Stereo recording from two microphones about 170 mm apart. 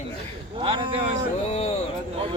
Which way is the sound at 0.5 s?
30° right (ahead or behind).